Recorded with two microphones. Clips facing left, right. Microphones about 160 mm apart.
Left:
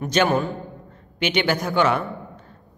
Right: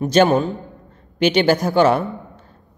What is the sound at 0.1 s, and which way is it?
A man's voice, 25° right (ahead or behind).